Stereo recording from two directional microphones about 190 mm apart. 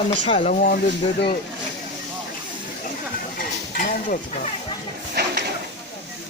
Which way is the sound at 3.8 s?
45° left (ahead or behind).